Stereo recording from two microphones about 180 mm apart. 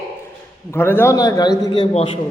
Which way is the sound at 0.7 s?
10° left (ahead or behind).